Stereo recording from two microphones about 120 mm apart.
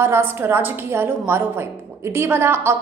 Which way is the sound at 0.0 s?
20° right (ahead or behind).